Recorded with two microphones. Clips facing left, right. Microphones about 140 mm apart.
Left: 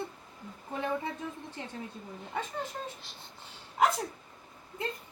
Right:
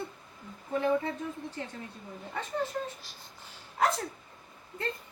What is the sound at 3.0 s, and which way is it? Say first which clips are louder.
Speech: left 1 dB; 25° left (ahead or behind).